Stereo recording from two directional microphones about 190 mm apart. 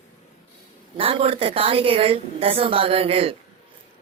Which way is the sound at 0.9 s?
30° right (ahead or behind).